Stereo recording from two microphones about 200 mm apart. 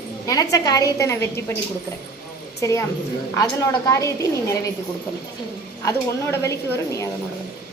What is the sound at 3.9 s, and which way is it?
Speech, 15° left (ahead or behind).